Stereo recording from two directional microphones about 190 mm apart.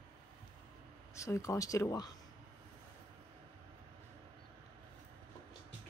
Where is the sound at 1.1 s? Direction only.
15° left (ahead or behind).